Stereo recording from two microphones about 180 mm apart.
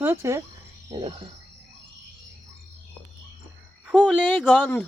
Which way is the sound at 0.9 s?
30° right (ahead or behind).